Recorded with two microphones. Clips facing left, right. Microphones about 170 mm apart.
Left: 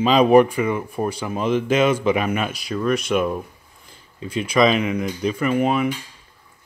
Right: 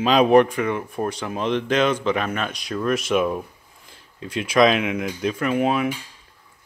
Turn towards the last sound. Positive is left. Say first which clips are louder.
# left 1 dB
turn(degrees=0)  # may be behind; listen again after turning